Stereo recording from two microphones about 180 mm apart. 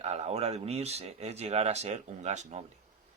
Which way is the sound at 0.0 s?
35° right (ahead or behind).